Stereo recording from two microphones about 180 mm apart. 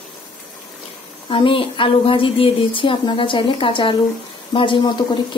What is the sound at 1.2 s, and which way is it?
Speech, 30° left (ahead or behind).